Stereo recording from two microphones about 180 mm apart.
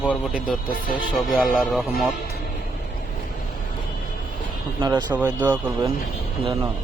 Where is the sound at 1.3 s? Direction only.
Centre (ahead or behind).